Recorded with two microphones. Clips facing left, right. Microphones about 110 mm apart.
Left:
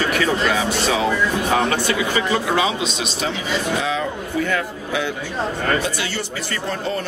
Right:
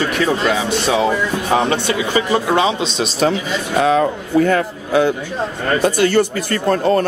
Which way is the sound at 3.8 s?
50° right (ahead or behind).